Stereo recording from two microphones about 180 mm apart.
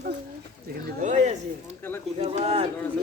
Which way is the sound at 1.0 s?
40° right (ahead or behind).